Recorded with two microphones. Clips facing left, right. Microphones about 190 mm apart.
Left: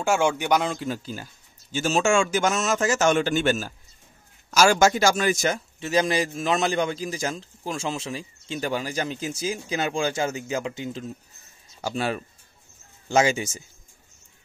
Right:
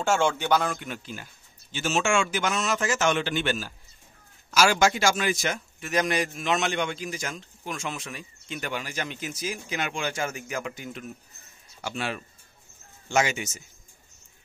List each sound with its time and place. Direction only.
0.0 s speech: 10° left (ahead or behind)
0.7 s a man's voice: 35° left (ahead or behind)
5.8 s a man's voice: 30° left (ahead or behind)